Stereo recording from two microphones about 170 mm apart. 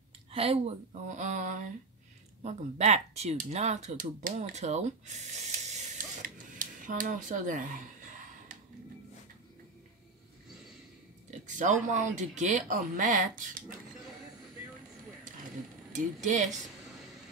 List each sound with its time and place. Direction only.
0.3 s speech: 35° right (ahead or behind)
11.2 s speech: 45° right (ahead or behind)
15.9 s speech: 45° right (ahead or behind)